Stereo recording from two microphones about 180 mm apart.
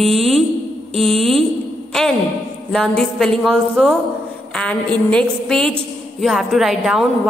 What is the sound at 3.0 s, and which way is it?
A woman's voice, 5° left (ahead or behind).